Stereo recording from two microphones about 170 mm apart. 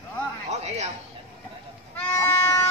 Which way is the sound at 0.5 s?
40° right (ahead or behind).